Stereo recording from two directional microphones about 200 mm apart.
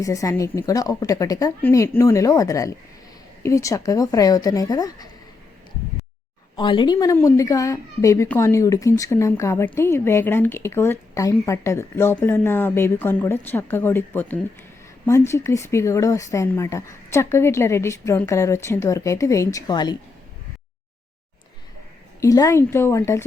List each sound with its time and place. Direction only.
0.0 s a woman's voice: 15° left (ahead or behind)
6.6 s a woman's voice: 25° left (ahead or behind)
22.2 s a woman's voice: 15° left (ahead or behind)